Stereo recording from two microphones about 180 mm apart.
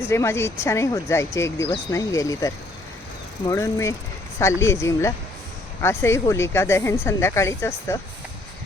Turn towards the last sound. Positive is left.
turn(degrees=15)  # may be behind; listen again after turning